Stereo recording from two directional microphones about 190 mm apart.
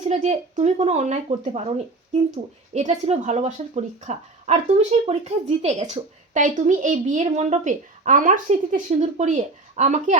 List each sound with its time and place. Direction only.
0.0 s speech: 35° right (ahead or behind)